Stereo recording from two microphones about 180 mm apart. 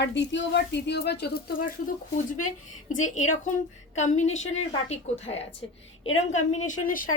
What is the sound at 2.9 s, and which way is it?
A woman's voice, 45° left (ahead or behind).